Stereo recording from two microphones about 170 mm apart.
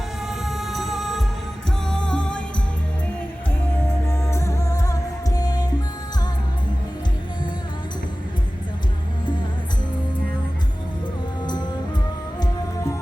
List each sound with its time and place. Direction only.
0.3 s music: centre (ahead or behind)
4.1 s music: 15° left (ahead or behind)
12.4 s music: 20° left (ahead or behind)